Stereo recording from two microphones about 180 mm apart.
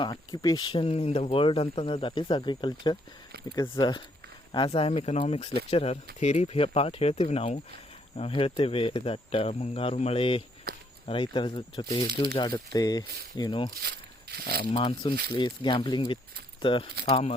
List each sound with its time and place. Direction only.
0.0 s speech: 20° left (ahead or behind)
13.8 s a sound: 60° right (ahead or behind)
14.6 s speech: 30° left (ahead or behind)